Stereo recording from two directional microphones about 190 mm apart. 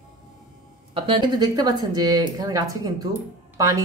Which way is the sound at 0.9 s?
25° right (ahead or behind).